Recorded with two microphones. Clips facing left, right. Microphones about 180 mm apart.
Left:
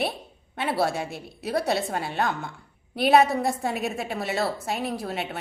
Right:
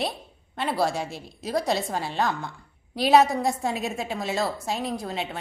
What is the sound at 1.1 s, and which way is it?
Speech, 65° left (ahead or behind).